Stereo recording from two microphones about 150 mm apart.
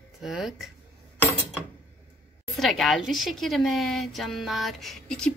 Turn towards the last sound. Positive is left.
turn(degrees=5)  # may be behind; listen again after turning